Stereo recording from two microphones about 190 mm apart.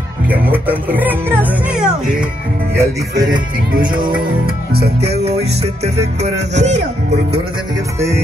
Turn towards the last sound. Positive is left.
turn(degrees=-35)  # may be behind; listen again after turning